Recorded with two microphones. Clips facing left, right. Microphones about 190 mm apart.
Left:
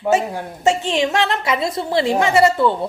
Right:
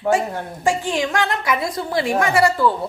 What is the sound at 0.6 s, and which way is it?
A woman's voice, 25° left (ahead or behind).